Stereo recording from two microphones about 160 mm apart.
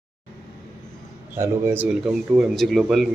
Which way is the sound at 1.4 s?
15° right (ahead or behind).